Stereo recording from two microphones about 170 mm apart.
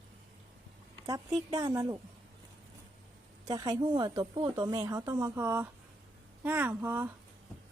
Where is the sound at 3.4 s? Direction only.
25° right (ahead or behind).